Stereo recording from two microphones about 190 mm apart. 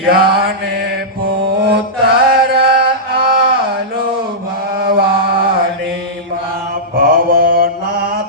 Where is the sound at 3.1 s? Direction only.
55° right (ahead or behind).